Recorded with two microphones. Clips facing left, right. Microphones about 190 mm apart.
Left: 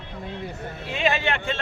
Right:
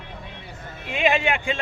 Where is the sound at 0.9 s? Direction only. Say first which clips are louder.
Right 2 dB; 10° right (ahead or behind).